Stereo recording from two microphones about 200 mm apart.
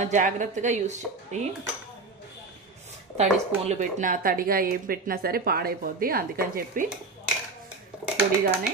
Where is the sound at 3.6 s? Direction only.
35° right (ahead or behind).